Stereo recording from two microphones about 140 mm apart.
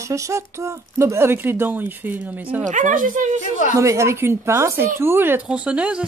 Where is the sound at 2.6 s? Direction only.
65° right (ahead or behind).